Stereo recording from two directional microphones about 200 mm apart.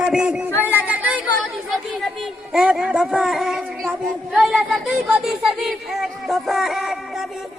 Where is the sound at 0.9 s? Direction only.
5° right (ahead or behind).